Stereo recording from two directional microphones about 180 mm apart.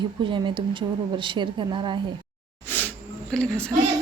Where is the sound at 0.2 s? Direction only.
25° right (ahead or behind).